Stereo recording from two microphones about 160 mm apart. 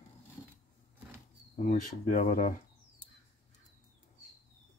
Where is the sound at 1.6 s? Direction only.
50° left (ahead or behind).